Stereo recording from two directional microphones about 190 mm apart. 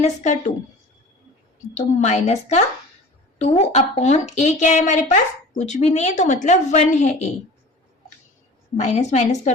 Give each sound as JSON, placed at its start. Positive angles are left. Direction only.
{"t": 0.0, "sound": "a woman's voice", "side_deg": 40}
{"t": 2.0, "sound": "a woman's voice", "side_deg": 35}
{"t": 8.8, "sound": "a woman's voice", "side_deg": 35}